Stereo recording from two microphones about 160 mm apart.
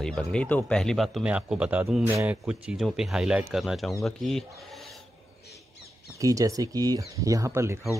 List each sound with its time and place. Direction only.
0.0 s speech: 5° left (ahead or behind)
6.1 s speech: 20° right (ahead or behind)